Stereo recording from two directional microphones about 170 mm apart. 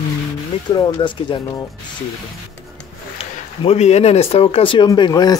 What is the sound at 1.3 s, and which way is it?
Speech, 30° left (ahead or behind).